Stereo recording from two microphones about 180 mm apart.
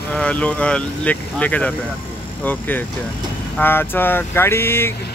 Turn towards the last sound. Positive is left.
turn(degrees=15)  # may be behind; listen again after turning